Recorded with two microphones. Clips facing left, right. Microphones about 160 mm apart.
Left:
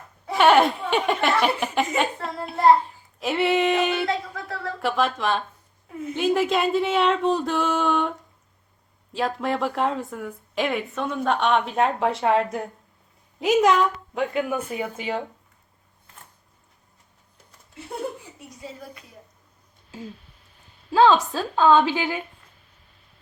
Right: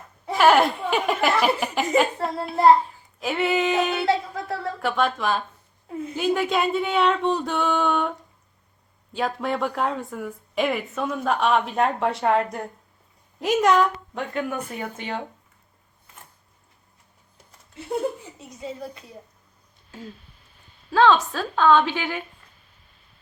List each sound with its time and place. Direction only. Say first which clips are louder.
0.3 s a woman's voice: even; centre (ahead or behind)
2.2 s child singing: left 1 dB; centre (ahead or behind)
4.0 s a sound: right 3 dB; 25° right (ahead or behind)
4.8 s a woman's voice: left 1 dB; centre (ahead or behind)
9.1 s a woman's voice: left 1 dB; centre (ahead or behind)
18.3 s speech: right 5 dB; 25° right (ahead or behind)
20.9 s a woman's voice: left 1 dB; 10° left (ahead or behind)